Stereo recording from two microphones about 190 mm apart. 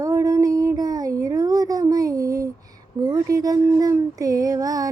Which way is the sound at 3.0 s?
15° right (ahead or behind).